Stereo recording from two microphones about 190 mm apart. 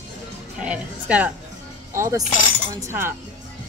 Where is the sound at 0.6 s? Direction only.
10° right (ahead or behind).